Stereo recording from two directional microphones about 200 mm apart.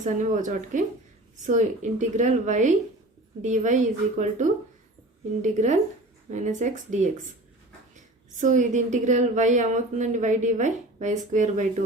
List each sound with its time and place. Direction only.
0.0 s a woman's voice: 40° right (ahead or behind)
8.4 s a woman's voice: 40° right (ahead or behind)